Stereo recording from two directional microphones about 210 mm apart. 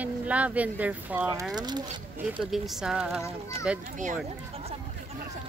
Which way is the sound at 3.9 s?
40° right (ahead or behind).